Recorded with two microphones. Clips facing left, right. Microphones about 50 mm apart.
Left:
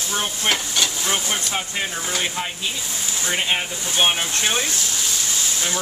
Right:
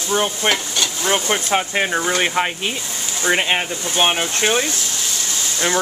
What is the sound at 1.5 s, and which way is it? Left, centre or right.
Speech, right.